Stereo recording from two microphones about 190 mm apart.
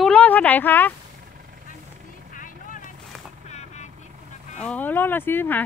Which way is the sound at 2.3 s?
45° left (ahead or behind).